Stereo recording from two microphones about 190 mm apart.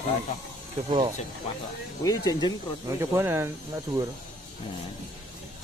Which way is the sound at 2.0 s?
20° left (ahead or behind).